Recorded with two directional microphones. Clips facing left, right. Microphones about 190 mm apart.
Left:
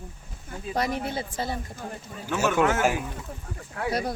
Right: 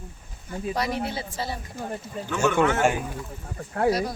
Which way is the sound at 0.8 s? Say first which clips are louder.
Left 2 dB; 50° left (ahead or behind).